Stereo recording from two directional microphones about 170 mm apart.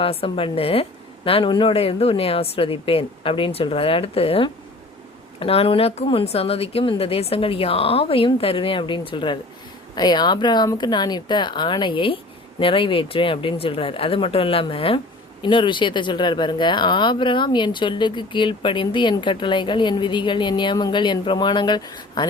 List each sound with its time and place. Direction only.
0.0 s speech: 35° left (ahead or behind)